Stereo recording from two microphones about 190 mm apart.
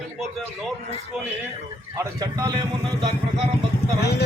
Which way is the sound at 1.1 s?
5° right (ahead or behind).